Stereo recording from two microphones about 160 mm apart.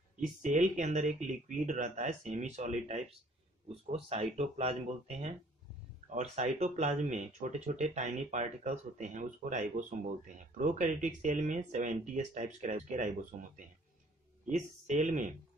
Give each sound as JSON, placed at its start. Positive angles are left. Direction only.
{"t": 0.2, "sound": "speech", "side_deg": -55}